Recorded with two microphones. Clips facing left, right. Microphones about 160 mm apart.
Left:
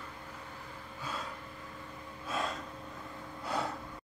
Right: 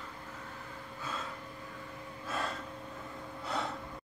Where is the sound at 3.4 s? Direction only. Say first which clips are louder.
Left 1 dB; 25° right (ahead or behind).